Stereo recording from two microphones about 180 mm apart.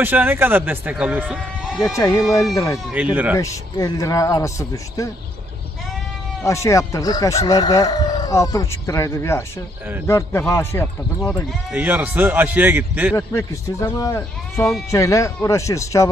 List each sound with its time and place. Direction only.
0.0 s speech: 10° right (ahead or behind)
2.0 s speech: 15° left (ahead or behind)
6.4 s speech: 15° left (ahead or behind)
11.7 s speech: 10° right (ahead or behind)
13.1 s speech: 15° left (ahead or behind)